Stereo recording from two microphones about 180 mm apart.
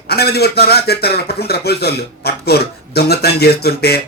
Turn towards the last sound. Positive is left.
turn(degrees=60)  # may be behind; listen again after turning